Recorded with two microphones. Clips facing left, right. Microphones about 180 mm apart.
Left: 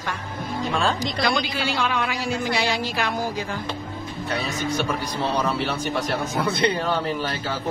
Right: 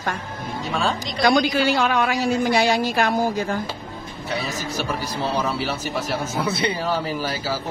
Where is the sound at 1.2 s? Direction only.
50° right (ahead or behind).